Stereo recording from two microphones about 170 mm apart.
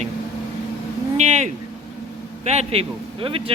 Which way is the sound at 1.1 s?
45° right (ahead or behind).